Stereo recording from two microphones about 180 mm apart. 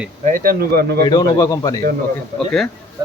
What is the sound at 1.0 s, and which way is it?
Speech, 20° left (ahead or behind).